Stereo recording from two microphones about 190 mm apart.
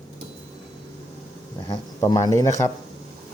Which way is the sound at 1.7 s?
20° left (ahead or behind).